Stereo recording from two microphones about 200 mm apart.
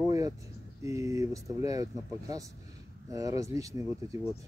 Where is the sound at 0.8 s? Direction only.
15° right (ahead or behind).